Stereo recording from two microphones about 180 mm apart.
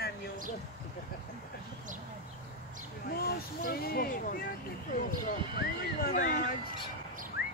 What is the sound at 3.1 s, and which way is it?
Speech, 60° left (ahead or behind).